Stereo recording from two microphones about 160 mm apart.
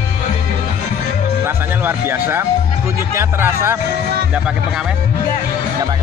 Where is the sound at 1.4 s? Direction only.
15° right (ahead or behind).